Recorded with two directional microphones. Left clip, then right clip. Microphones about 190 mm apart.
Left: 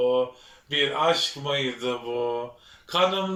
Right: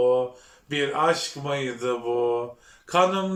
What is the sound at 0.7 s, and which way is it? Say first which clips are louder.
Speech: even; 5° right (ahead or behind).